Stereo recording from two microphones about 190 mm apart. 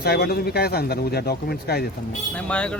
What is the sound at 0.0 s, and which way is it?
Speech, 55° left (ahead or behind).